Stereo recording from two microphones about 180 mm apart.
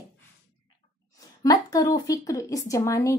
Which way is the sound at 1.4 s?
20° left (ahead or behind).